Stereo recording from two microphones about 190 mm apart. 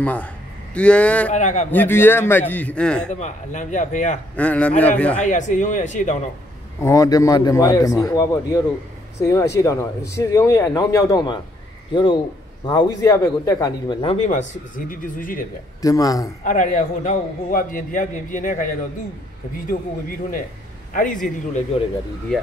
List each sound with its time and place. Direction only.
0.0 s speech: 10° left (ahead or behind)
1.3 s speech: 40° left (ahead or behind)
1.7 s speech: 10° left (ahead or behind)
3.1 s speech: 40° left (ahead or behind)
4.4 s speech: 5° left (ahead or behind)
5.2 s speech: 40° left (ahead or behind)
6.8 s a man's voice: 20° left (ahead or behind)
14.0 s a man's voice: 40° left (ahead or behind)
15.8 s speech: 20° left (ahead or behind)
16.4 s a man's voice: 45° left (ahead or behind)
20.9 s a man's voice: 45° left (ahead or behind)
22.3 s speech: 5° left (ahead or behind)